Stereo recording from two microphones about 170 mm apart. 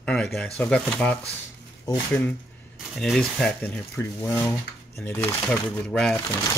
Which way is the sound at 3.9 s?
15° left (ahead or behind).